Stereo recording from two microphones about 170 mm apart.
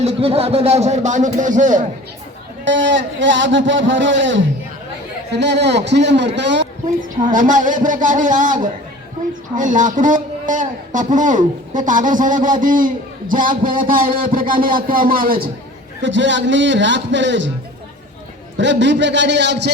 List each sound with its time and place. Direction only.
0.0 s speech: 35° right (ahead or behind)
2.6 s a man's voice: 90° right
7.3 s a man's voice: 50° right (ahead or behind)
9.6 s a man's voice: 50° right (ahead or behind)
16.0 s a man's voice: 90° right
18.5 s a man's voice: 90° right